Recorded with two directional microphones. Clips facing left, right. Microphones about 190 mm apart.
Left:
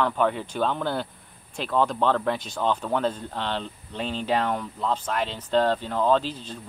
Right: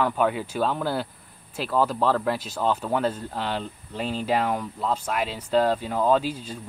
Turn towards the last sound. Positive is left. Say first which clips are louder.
# right 1 dB
turn(degrees=-10)  # may be behind; listen again after turning